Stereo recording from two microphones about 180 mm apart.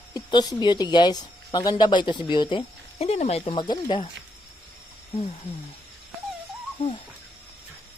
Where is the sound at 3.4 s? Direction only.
25° left (ahead or behind).